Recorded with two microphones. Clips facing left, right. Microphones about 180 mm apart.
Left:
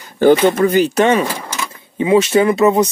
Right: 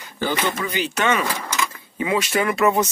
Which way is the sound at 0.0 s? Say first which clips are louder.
Left 13 dB; 50° left (ahead or behind).